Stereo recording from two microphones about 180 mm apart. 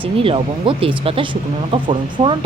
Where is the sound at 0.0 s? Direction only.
30° right (ahead or behind).